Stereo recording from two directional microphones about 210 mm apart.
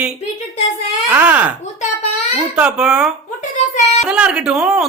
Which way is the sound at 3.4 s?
35° left (ahead or behind).